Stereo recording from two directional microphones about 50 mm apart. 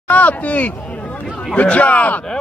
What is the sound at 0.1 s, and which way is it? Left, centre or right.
Speech, left.